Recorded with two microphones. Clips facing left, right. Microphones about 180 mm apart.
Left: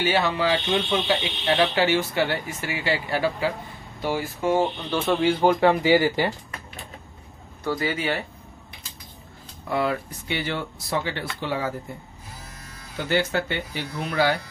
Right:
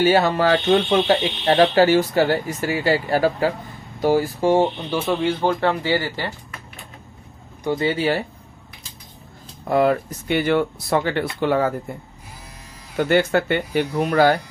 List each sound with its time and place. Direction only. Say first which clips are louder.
0.0 s speech: right 6 dB; 45° right (ahead or behind)
5.0 s speech: left 1 dB; 5° left (ahead or behind)
7.6 s speech: right 5 dB; 25° right (ahead or behind)
9.7 s speech: right 7 dB; 45° right (ahead or behind)
12.9 s speech: right 6 dB; 55° right (ahead or behind)